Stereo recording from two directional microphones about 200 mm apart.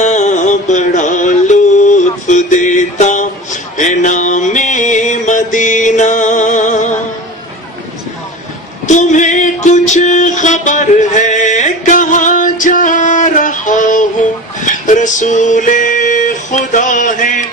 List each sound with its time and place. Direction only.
0.0 s music: 35° left (ahead or behind)
8.8 s music: 35° left (ahead or behind)
14.6 s a sound: 40° left (ahead or behind)
16.7 s music: 40° left (ahead or behind)